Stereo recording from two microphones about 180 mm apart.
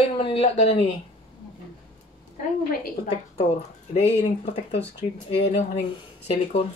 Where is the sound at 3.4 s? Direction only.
35° left (ahead or behind).